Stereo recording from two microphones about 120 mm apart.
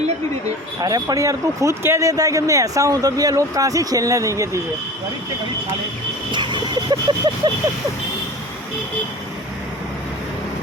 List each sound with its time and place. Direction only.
0.8 s speech: 30° right (ahead or behind)
6.3 s vehicle: 40° right (ahead or behind)